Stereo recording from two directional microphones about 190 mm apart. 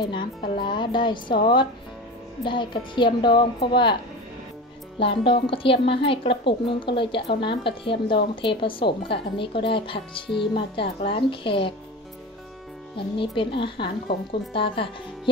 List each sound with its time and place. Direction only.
0.1 s a woman's voice: 25° left (ahead or behind)
4.9 s a woman's voice: 30° left (ahead or behind)
12.9 s a woman's voice: 25° left (ahead or behind)